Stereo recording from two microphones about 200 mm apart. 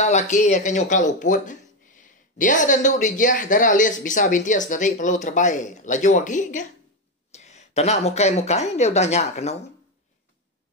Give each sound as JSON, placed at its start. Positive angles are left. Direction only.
{"t": 0.0, "sound": "speech", "side_deg": 35}